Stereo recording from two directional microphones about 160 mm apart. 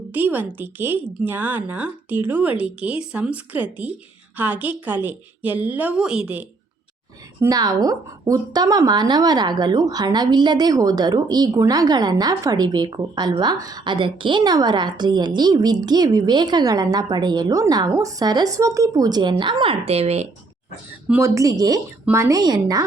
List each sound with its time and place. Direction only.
0.1 s a woman's voice: 10° right (ahead or behind)
7.4 s speech: 25° right (ahead or behind); by 20.2 s 40° right (ahead or behind)
21.1 s speech: 15° right (ahead or behind)